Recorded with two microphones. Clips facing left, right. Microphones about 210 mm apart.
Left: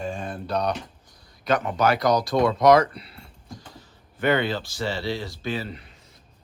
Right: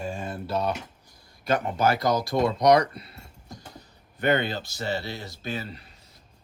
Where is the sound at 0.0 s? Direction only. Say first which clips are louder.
Left 2 dB; 10° right (ahead or behind).